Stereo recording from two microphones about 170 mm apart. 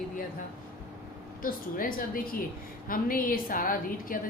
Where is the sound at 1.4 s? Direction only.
55° left (ahead or behind).